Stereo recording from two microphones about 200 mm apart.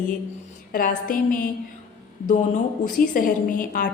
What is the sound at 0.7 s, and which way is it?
A woman's voice, 45° left (ahead or behind).